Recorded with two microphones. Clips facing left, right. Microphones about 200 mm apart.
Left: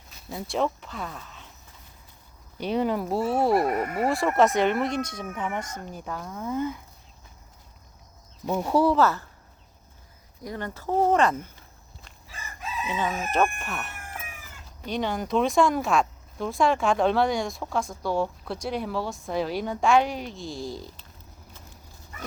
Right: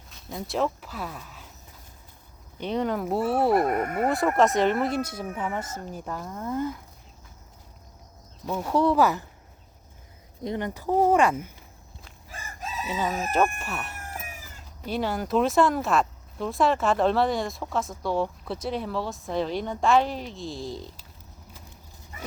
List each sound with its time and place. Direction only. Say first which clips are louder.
0.1 s speech: even; 5° left (ahead or behind)
2.6 s speech: left 1 dB; 10° left (ahead or behind)
8.5 s speech: left 1 dB; 5° left (ahead or behind)
9.0 s speech: even; 15° right (ahead or behind)
10.4 s speech: right 4 dB; 20° right (ahead or behind)
12.3 s chicken: even; 45° right (ahead or behind)
12.9 s speech: right 1 dB; 5° right (ahead or behind)
14.0 s chicken: right 2 dB; 35° right (ahead or behind)
14.8 s speech: even; 5° right (ahead or behind)